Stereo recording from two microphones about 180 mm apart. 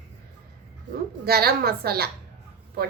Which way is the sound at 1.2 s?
60° right (ahead or behind).